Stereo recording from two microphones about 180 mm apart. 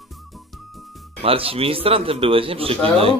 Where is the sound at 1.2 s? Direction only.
30° right (ahead or behind).